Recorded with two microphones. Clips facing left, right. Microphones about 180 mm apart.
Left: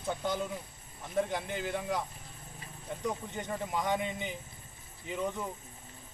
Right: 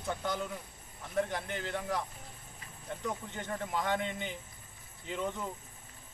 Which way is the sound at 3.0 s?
15° left (ahead or behind).